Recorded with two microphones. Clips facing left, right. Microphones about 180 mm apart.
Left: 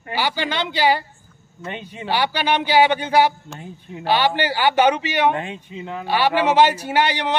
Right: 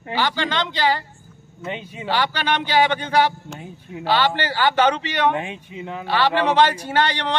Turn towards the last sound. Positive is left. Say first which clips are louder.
# left 1 dB
turn(degrees=10)  # may be behind; listen again after turning